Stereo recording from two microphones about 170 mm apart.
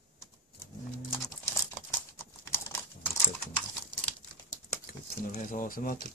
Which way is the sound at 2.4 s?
15° left (ahead or behind).